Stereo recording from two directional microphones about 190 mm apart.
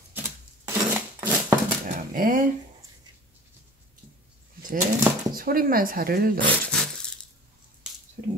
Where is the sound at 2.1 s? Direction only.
45° right (ahead or behind).